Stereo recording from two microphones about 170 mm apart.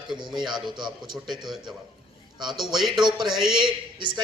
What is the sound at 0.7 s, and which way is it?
Speech, 25° right (ahead or behind).